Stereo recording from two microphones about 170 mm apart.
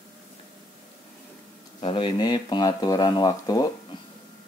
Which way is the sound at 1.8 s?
30° left (ahead or behind).